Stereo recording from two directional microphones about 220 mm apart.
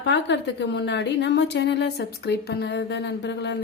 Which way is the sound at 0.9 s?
50° left (ahead or behind).